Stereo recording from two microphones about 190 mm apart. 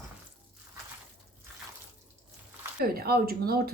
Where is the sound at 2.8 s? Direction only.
50° right (ahead or behind).